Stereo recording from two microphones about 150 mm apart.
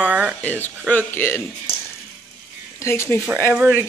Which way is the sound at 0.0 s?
10° right (ahead or behind).